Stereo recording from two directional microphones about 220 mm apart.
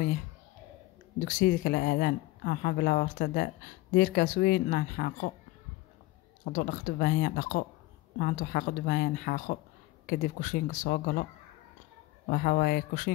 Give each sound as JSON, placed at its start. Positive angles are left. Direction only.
{"t": 1.4, "sound": "speech", "side_deg": 40}
{"t": 6.5, "sound": "speech", "side_deg": 40}
{"t": 12.3, "sound": "speech", "side_deg": 40}